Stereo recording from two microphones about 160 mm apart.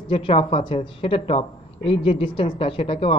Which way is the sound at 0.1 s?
35° left (ahead or behind).